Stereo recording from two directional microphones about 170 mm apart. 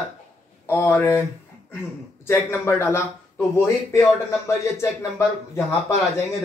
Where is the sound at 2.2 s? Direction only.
15° left (ahead or behind).